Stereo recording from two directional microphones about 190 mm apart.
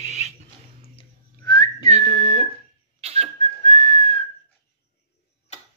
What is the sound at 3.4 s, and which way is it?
Whistling, 35° left (ahead or behind).